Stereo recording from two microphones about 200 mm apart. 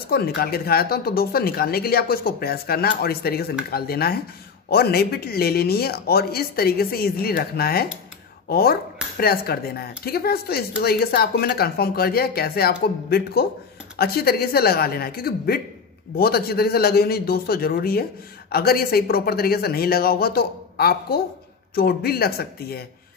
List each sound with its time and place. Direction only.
0.4 s speech: 50° left (ahead or behind)